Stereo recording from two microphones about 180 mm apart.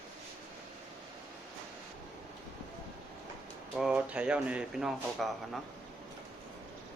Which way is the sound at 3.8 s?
5° right (ahead or behind).